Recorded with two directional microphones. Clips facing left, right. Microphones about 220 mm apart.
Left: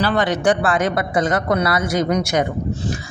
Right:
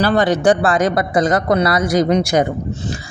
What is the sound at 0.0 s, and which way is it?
Speech, 35° right (ahead or behind).